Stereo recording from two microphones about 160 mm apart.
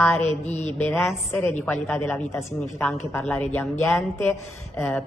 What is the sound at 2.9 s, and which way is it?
A woman's voice, 15° left (ahead or behind).